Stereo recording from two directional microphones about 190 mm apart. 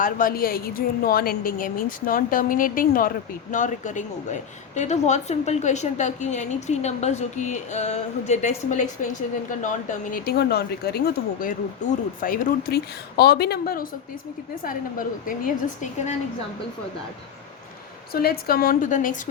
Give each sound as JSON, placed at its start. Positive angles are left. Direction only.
{"t": 0.0, "sound": "a woman's voice", "side_deg": 50}
{"t": 18.1, "sound": "a woman's voice", "side_deg": 55}